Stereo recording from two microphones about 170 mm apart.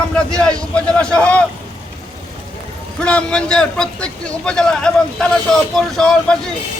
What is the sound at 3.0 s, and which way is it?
A man's voice, 5° left (ahead or behind).